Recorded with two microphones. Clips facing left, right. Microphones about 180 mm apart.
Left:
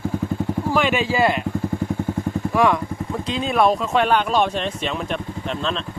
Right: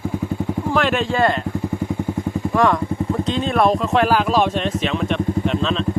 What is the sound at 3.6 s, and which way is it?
Speech, centre (ahead or behind).